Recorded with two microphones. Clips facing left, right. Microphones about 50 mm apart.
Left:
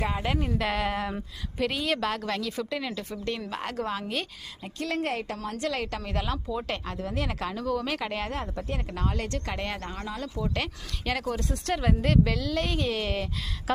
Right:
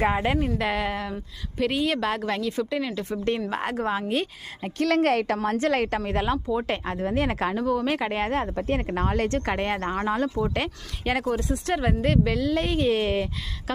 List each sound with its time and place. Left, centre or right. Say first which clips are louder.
0.0 s speech: right 7 dB; right
0.3 s a woman's voice: right 3 dB; centre
2.5 s a woman's voice: right 5 dB; centre
3.5 s speech: right 5 dB; right
4.6 s a woman's voice: right 8 dB; right
5.5 s a woman's voice: right 5 dB; right
6.1 s speech: right 6 dB; right
7.6 s speech: right 3 dB; centre; by 10.0 s right
10.0 s a woman's voice: right 10 dB; right
10.2 s speech: right 5 dB; right
11.3 s speech: right 4 dB; centre
12.9 s speech: right 6 dB; right
13.7 s speech: left 2 dB; centre